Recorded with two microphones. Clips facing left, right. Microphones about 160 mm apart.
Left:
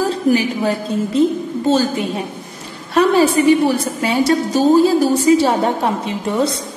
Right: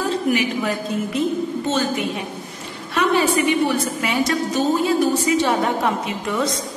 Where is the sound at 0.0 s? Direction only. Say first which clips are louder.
Left 4 dB; 35° left (ahead or behind).